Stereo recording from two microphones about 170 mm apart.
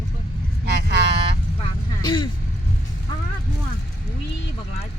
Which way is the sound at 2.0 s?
25° left (ahead or behind).